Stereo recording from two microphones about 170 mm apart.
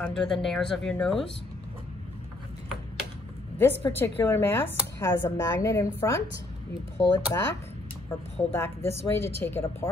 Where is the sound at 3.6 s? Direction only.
15° left (ahead or behind).